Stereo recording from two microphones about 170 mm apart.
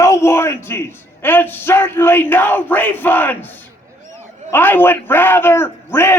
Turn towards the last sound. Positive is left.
turn(degrees=15)  # may be behind; listen again after turning